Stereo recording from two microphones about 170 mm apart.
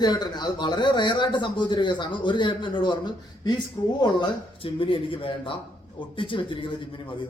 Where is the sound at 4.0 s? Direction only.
30° left (ahead or behind).